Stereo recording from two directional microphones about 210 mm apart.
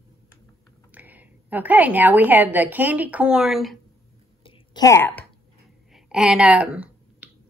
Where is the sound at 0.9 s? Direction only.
10° right (ahead or behind).